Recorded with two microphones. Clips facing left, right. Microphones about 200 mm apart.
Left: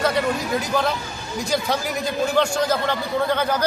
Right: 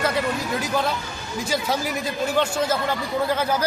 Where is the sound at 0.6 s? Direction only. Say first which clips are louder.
Left 1 dB; centre (ahead or behind).